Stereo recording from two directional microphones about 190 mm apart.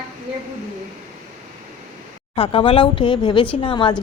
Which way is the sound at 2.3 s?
30° left (ahead or behind).